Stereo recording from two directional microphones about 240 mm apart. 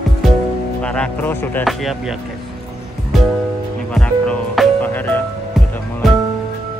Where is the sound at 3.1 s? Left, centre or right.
Centre.